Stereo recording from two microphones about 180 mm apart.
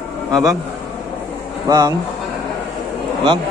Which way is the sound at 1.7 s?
20° right (ahead or behind).